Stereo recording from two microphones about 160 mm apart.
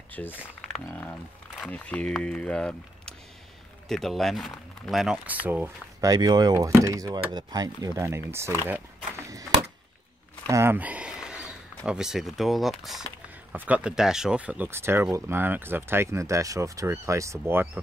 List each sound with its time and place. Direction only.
0.2 s speech: 10° left (ahead or behind); by 5.7 s 10° right (ahead or behind)
5.9 s speech: 25° right (ahead or behind)
10.5 s a sound: 15° right (ahead or behind)
11.8 s speech: 5° right (ahead or behind)